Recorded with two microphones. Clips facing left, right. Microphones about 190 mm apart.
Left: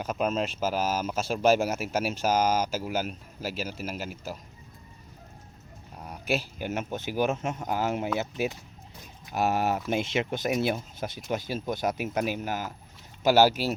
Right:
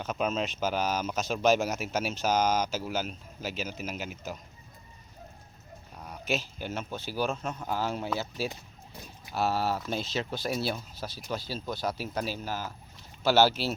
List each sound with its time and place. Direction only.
0.0 s speech: 10° left (ahead or behind)
6.0 s speech: 10° left (ahead or behind)
9.3 s speech: 15° left (ahead or behind)